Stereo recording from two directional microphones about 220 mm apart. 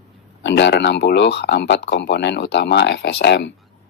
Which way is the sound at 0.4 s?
50° left (ahead or behind).